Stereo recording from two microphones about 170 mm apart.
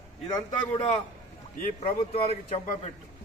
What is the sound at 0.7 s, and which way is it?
Speech, 40° left (ahead or behind).